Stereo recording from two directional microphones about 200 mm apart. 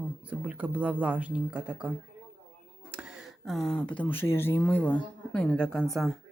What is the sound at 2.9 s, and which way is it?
Speech, 5° right (ahead or behind).